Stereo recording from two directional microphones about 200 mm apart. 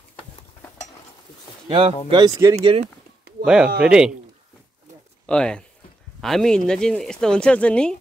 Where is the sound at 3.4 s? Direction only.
5° right (ahead or behind).